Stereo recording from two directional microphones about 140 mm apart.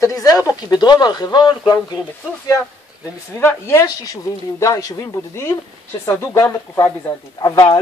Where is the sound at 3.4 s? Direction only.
15° left (ahead or behind).